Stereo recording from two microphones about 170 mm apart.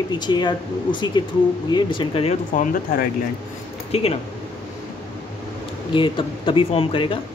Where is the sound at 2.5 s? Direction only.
50° left (ahead or behind).